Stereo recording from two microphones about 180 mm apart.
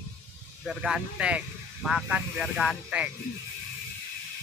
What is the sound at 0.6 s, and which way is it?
Speech, 5° right (ahead or behind).